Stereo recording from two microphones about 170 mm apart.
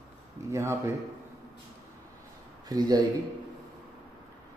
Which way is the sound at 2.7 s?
20° right (ahead or behind).